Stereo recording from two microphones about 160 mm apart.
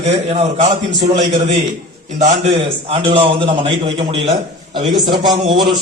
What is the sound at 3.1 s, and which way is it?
A man's voice, 35° right (ahead or behind).